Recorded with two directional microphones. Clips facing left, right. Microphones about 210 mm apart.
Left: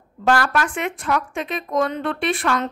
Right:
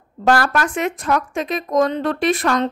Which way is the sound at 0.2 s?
40° right (ahead or behind).